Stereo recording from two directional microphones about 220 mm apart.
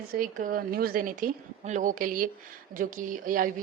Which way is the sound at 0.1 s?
40° right (ahead or behind).